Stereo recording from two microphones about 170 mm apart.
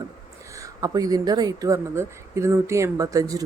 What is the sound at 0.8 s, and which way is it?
Speech, 20° right (ahead or behind).